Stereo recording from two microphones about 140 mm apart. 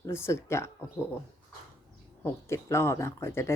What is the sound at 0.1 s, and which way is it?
Speech, 20° left (ahead or behind).